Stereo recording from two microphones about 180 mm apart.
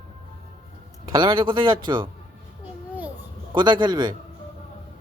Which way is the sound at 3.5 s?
25° right (ahead or behind).